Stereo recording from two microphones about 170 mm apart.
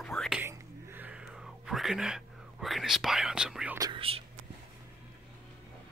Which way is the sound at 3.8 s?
30° right (ahead or behind).